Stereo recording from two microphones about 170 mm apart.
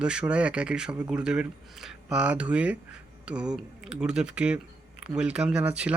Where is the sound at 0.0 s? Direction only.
5° right (ahead or behind).